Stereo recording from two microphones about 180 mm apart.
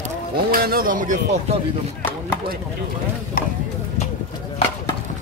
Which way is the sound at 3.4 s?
55° left (ahead or behind).